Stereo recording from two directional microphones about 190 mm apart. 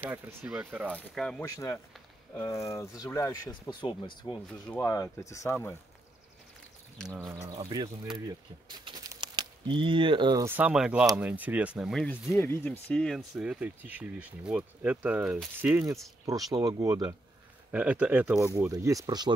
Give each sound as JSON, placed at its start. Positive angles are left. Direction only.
{"t": 0.0, "sound": "speech", "side_deg": -10}
{"t": 0.9, "sound": "speech", "side_deg": 5}
{"t": 1.4, "sound": "speech", "side_deg": 15}
{"t": 3.8, "sound": "speech", "side_deg": 25}
{"t": 7.2, "sound": "speech", "side_deg": -15}
{"t": 10.4, "sound": "speech", "side_deg": -10}
{"t": 16.5, "sound": "speech", "side_deg": -20}